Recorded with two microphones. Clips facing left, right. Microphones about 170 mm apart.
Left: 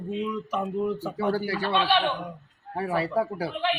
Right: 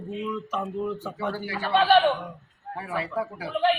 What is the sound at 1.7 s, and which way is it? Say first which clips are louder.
Speech: right 6 dB; 45° right (ahead or behind).